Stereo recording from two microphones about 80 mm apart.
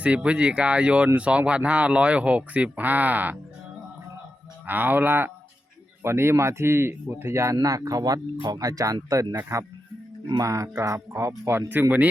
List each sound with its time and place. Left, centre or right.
0.0 s speech: centre
4.6 s speech: right
7.5 s speech: right
11.7 s speech: right